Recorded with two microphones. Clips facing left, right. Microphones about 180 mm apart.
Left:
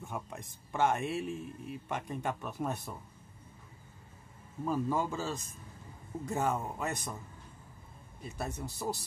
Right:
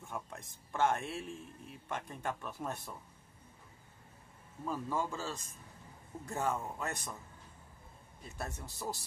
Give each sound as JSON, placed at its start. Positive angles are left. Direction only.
{"t": 0.0, "sound": "a man's voice", "side_deg": 15}
{"t": 4.6, "sound": "a man's voice", "side_deg": 15}
{"t": 8.4, "sound": "a man's voice", "side_deg": 15}